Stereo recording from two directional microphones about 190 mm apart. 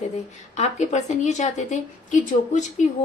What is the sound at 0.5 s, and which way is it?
A woman's voice, 35° left (ahead or behind).